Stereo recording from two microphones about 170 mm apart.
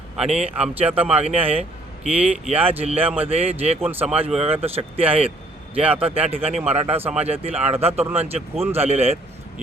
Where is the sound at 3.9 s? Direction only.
10° right (ahead or behind).